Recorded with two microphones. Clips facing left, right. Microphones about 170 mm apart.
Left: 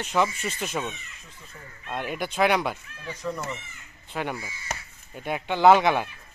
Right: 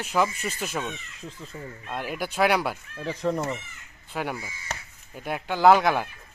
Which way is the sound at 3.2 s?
50° right (ahead or behind).